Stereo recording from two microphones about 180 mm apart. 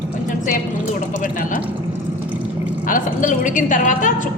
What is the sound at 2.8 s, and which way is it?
A woman's voice, 45° left (ahead or behind).